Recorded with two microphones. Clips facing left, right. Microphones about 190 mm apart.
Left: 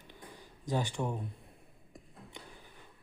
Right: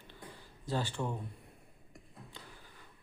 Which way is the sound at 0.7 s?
15° left (ahead or behind).